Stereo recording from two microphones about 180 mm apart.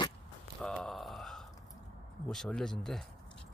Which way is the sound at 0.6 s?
5° left (ahead or behind).